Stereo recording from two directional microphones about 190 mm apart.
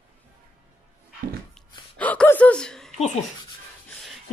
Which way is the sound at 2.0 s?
10° left (ahead or behind).